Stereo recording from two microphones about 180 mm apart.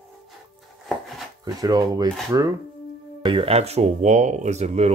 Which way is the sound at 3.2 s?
30° right (ahead or behind).